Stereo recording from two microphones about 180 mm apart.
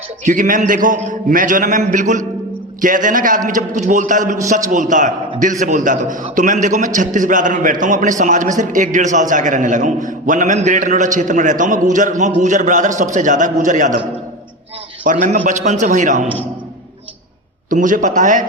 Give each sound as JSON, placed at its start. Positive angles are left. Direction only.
{"t": 0.3, "sound": "a man's voice", "side_deg": -50}
{"t": 15.0, "sound": "a man's voice", "side_deg": -45}
{"t": 17.7, "sound": "a man's voice", "side_deg": -45}